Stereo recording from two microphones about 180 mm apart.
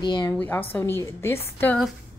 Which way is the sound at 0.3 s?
10° left (ahead or behind).